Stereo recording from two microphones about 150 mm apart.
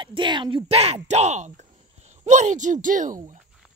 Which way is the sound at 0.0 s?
30° right (ahead or behind).